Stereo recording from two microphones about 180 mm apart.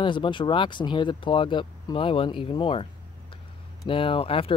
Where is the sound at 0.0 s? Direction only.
25° left (ahead or behind).